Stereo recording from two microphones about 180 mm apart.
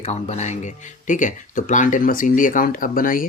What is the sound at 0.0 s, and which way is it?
Speech, 40° left (ahead or behind).